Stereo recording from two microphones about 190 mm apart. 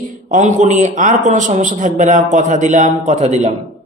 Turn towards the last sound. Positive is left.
turn(degrees=-35)  # may be behind; listen again after turning